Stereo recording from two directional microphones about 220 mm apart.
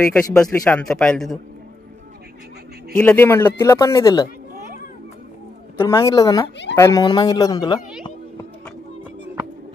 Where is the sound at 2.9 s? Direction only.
5° left (ahead or behind).